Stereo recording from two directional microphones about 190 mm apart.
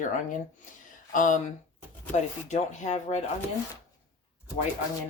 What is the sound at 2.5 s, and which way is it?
Speech, 40° left (ahead or behind).